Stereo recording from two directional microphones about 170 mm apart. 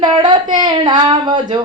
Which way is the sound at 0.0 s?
30° right (ahead or behind).